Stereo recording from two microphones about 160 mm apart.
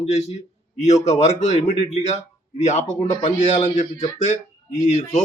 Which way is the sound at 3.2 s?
40° left (ahead or behind).